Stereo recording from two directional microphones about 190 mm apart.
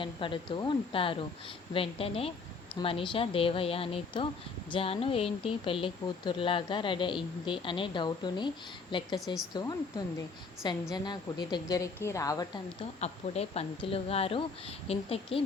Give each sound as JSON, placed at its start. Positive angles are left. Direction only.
{"t": 0.0, "sound": "speech", "side_deg": 25}
{"t": 9.2, "sound": "speech", "side_deg": 0}
{"t": 10.9, "sound": "speech", "side_deg": 20}
{"t": 13.0, "sound": "a woman's voice", "side_deg": 35}